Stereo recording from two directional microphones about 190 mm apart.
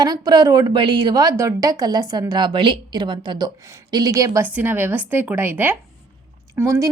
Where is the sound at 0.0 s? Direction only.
20° right (ahead or behind).